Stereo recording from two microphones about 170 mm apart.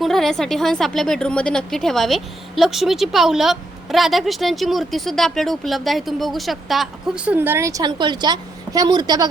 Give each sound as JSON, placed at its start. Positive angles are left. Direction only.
{"t": 0.0, "sound": "a woman's voice", "side_deg": 0}
{"t": 7.3, "sound": "a woman's voice", "side_deg": -10}